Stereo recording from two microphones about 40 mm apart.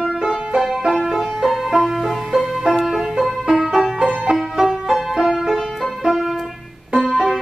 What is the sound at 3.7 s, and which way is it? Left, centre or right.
Music, centre.